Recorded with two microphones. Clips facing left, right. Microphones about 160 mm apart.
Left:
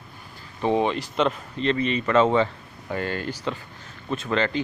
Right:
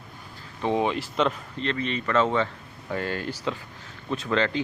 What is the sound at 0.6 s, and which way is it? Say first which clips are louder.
Speech: left 2 dB; 5° left (ahead or behind).